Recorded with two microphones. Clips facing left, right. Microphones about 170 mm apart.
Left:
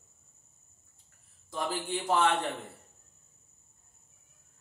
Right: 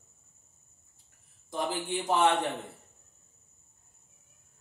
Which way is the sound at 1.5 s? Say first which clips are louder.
Right 1 dB; 15° right (ahead or behind).